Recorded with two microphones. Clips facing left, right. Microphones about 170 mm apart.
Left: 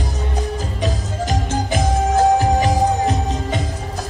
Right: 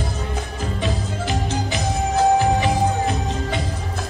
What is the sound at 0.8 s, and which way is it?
Music, 45° left (ahead or behind).